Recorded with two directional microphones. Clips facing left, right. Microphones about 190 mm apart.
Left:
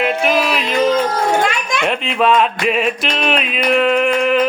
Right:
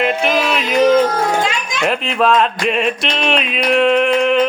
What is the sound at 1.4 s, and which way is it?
Music, 55° left (ahead or behind).